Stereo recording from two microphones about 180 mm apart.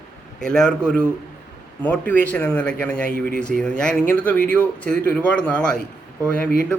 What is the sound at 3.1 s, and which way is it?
Speech, 55° right (ahead or behind).